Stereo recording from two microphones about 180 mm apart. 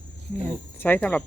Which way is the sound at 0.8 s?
10° left (ahead or behind).